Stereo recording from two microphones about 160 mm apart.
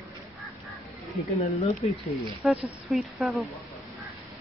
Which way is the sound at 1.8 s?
40° left (ahead or behind).